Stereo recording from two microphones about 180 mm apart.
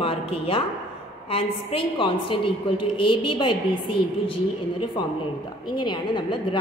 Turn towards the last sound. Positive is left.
turn(degrees=25)  # may be behind; listen again after turning